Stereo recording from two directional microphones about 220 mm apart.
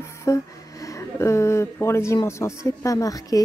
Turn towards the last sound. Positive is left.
turn(degrees=15)  # may be behind; listen again after turning